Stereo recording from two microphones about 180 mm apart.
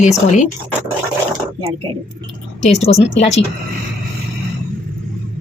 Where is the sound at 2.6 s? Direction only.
35° left (ahead or behind).